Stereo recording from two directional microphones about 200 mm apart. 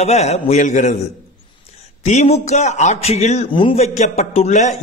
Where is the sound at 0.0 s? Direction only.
35° left (ahead or behind).